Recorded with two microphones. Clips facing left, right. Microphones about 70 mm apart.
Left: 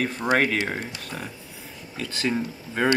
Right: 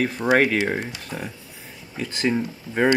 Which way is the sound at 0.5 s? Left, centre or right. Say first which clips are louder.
Right 4 dB; centre.